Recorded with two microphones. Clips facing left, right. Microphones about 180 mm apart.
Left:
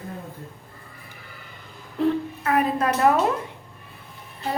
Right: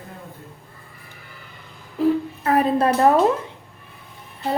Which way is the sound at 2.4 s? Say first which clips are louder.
Right 4 dB; 30° right (ahead or behind).